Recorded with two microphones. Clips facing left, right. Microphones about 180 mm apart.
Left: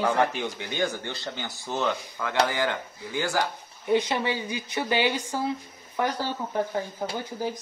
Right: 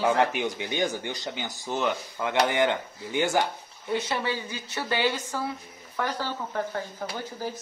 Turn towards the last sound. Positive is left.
turn(degrees=15)  # may be behind; listen again after turning